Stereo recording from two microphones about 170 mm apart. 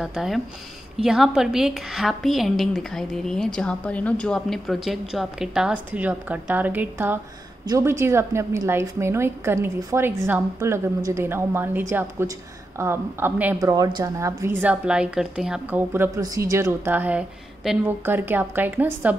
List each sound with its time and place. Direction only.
0.0 s a woman's voice: 5° right (ahead or behind)